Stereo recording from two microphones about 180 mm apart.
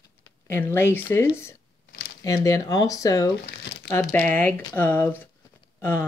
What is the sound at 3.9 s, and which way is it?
Speech, 10° left (ahead or behind).